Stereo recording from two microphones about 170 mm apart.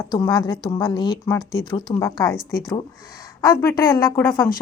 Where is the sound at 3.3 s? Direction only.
20° left (ahead or behind).